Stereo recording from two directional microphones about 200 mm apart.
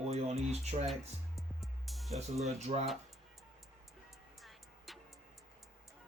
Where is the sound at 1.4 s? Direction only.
Centre (ahead or behind).